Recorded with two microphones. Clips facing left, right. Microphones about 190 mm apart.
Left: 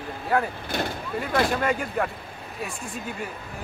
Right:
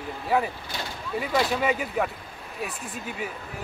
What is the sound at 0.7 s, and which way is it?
Speech, 55° left (ahead or behind).